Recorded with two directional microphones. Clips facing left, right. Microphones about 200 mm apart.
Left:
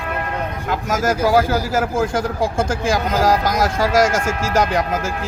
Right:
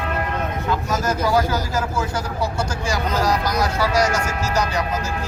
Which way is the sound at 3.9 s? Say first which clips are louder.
Left 5 dB; 90° left.